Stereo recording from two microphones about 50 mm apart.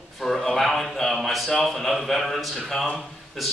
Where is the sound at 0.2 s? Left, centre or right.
Centre.